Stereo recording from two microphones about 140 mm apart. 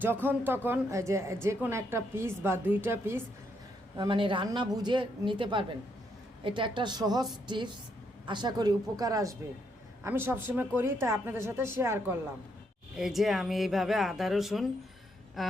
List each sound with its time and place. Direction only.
0.0 s speech: 15° right (ahead or behind)
3.9 s a woman's voice: 35° right (ahead or behind); by 12.1 s 15° right (ahead or behind)
13.0 s speech: centre (ahead or behind)